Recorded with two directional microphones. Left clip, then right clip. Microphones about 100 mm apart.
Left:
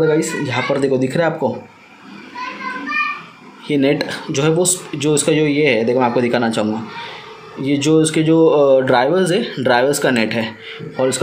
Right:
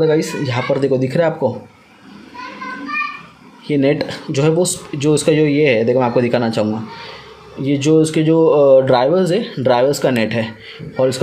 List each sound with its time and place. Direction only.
0.0 s speech: 35° right (ahead or behind)
3.6 s speech: 45° right (ahead or behind)